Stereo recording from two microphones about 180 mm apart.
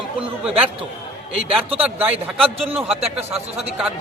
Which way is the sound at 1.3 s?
30° right (ahead or behind).